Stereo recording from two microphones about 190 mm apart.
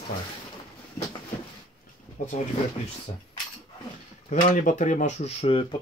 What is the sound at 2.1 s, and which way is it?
Speech, 40° left (ahead or behind).